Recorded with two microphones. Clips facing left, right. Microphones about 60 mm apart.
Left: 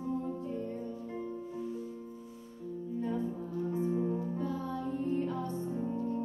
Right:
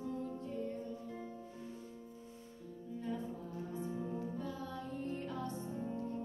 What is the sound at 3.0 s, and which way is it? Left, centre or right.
Music, left.